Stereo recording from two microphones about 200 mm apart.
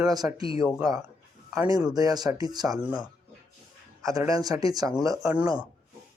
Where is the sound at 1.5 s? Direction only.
15° right (ahead or behind).